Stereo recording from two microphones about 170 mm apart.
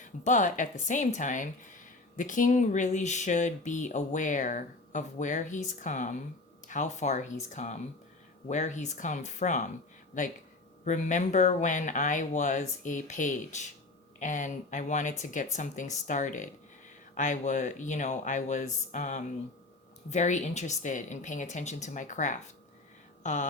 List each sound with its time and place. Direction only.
0.3 s speech: 45° left (ahead or behind)